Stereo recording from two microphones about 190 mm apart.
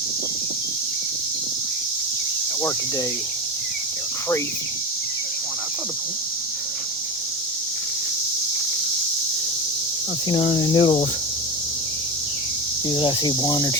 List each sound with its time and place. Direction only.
10.2 s speech: 20° left (ahead or behind)
12.9 s speech: 25° left (ahead or behind)